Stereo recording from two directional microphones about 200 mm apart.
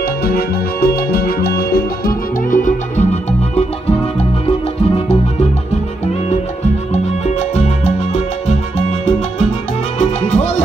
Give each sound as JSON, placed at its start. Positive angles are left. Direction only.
{"t": 0.0, "sound": "music", "side_deg": 50}
{"t": 6.9, "sound": "music", "side_deg": 30}